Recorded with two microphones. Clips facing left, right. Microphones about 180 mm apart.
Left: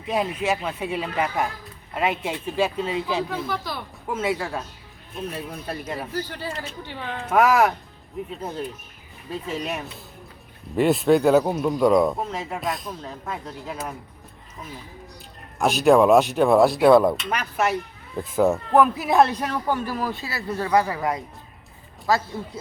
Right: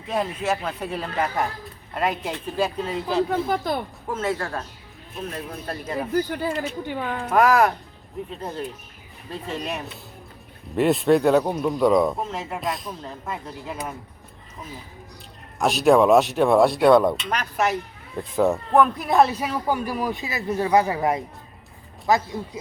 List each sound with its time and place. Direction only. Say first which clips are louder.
0.1 s speech: left 1 dB; 10° left (ahead or behind)
3.2 s speech: right 5 dB; 50° right (ahead or behind)
4.1 s speech: left 1 dB; 10° left (ahead or behind)
6.1 s speech: right 6 dB; 50° right (ahead or behind)
7.3 s speech: even; 5° left (ahead or behind)
15.5 s speech: even; centre (ahead or behind); by 22.6 s 20° right (ahead or behind)